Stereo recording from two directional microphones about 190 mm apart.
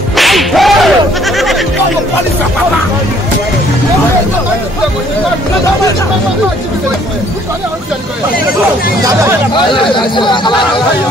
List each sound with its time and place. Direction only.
0.1 s goat: centre (ahead or behind)
9.7 s speech: 25° left (ahead or behind)